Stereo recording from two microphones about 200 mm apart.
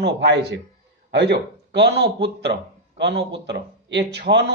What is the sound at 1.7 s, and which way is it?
A man's voice, 55° right (ahead or behind).